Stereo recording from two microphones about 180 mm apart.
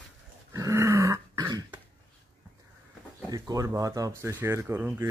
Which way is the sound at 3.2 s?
20° right (ahead or behind).